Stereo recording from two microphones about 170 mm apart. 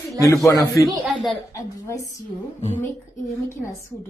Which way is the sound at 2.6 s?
45° left (ahead or behind).